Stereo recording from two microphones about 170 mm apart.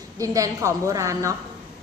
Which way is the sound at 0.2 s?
20° right (ahead or behind).